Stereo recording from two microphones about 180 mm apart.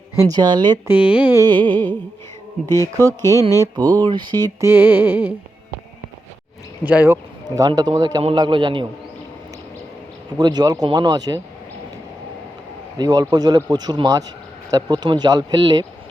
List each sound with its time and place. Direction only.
0.2 s speech: 20° right (ahead or behind)
0.9 s music: 10° right (ahead or behind)
1.4 s speech: 25° right (ahead or behind)
2.8 s speech: 20° right (ahead or behind)
3.1 s music: 15° left (ahead or behind)
4.0 s speech: 25° right (ahead or behind)
4.6 s music: 10° right (ahead or behind)
6.8 s music: 10° right (ahead or behind)
7.4 s speech: 20° right (ahead or behind)
10.3 s speech: 20° right (ahead or behind)
13.0 s speech: 20° right (ahead or behind)